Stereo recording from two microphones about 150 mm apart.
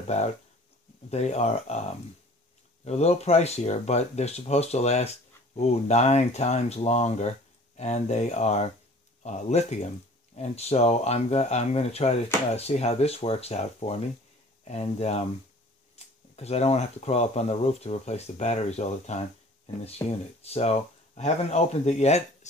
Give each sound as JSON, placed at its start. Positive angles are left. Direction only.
{"t": 0.0, "sound": "speech", "side_deg": 50}
{"t": 16.0, "sound": "camera", "side_deg": 45}
{"t": 16.3, "sound": "speech", "side_deg": 45}